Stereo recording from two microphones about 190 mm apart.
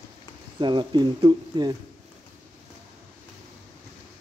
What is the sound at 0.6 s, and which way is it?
Speech, 25° right (ahead or behind).